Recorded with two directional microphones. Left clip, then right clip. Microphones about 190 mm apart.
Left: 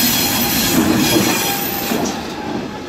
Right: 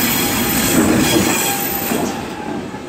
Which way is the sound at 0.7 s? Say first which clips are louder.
Right 2 dB; 50° left (ahead or behind).